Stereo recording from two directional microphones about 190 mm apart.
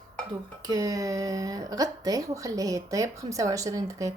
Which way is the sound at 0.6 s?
20° right (ahead or behind).